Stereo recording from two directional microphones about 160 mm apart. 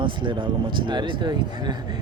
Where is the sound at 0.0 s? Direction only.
30° right (ahead or behind).